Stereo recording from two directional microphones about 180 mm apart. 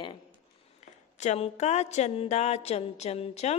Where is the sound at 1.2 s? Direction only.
40° left (ahead or behind).